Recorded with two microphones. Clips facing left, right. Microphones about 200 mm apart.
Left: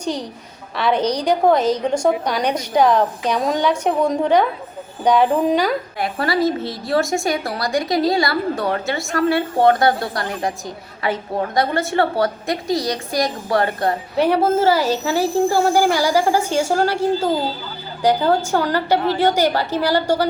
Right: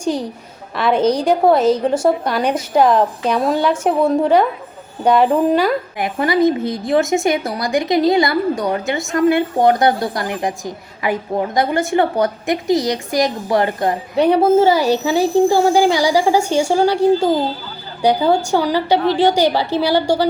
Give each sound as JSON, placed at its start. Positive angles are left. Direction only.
{"t": 0.0, "sound": "a woman's voice", "side_deg": -10}
{"t": 6.0, "sound": "a woman's voice", "side_deg": -15}